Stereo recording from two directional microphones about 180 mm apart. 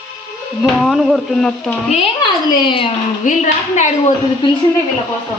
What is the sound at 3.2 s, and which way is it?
Speech, 45° left (ahead or behind).